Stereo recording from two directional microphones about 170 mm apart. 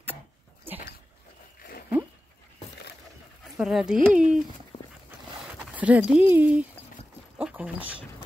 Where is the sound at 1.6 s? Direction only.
60° left (ahead or behind).